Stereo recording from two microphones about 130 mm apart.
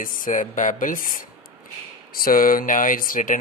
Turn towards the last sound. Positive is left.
turn(degrees=90)